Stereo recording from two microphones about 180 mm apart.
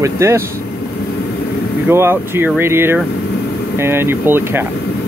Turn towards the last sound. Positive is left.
turn(degrees=-10)  # may be behind; listen again after turning